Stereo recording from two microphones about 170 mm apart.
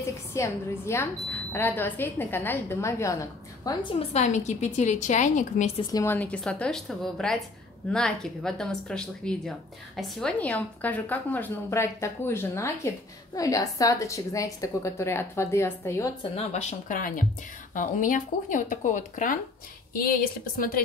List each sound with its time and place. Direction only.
0.3 s a woman's voice: 15° left (ahead or behind)
4.1 s speech: 45° left (ahead or behind)
5.8 s a woman's voice: 20° left (ahead or behind)
6.1 s a woman's voice: 10° left (ahead or behind)
16.2 s speech: 40° left (ahead or behind); by 20.8 s 55° left (ahead or behind)